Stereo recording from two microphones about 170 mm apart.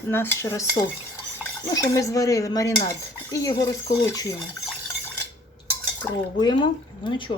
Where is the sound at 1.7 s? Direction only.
20° left (ahead or behind).